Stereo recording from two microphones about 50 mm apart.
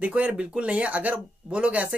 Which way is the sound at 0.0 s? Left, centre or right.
Right.